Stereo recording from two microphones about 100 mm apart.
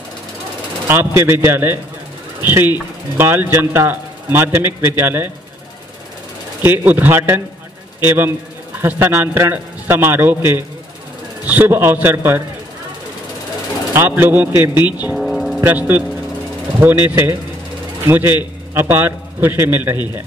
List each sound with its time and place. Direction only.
0.8 s a man's voice: 25° right (ahead or behind)
6.6 s a man's voice: 20° right (ahead or behind)
13.9 s a man's voice: 20° right (ahead or behind)
15.1 s music: centre (ahead or behind)
15.6 s a man's voice: 20° right (ahead or behind)